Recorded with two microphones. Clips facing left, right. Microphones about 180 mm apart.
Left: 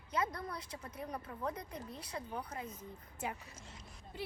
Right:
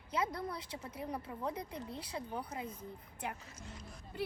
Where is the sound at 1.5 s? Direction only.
30° right (ahead or behind).